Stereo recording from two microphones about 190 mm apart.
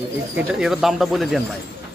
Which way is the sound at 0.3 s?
5° right (ahead or behind).